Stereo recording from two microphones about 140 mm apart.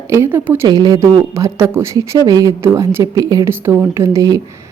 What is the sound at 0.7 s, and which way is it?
Speech, 30° right (ahead or behind).